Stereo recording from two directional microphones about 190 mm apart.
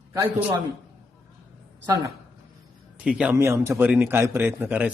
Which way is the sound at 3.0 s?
5° right (ahead or behind).